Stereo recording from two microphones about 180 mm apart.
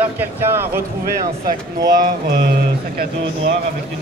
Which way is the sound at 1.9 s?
55° right (ahead or behind).